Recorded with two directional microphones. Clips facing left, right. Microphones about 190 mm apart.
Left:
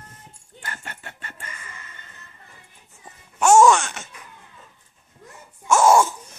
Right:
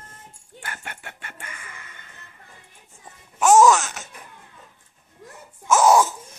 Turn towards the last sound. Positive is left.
turn(degrees=0)  # may be behind; listen again after turning